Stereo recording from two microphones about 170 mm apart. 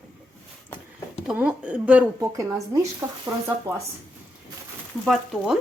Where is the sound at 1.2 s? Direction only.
5° right (ahead or behind).